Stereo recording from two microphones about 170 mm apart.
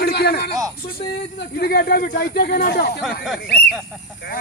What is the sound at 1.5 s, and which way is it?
Speech, 65° left (ahead or behind).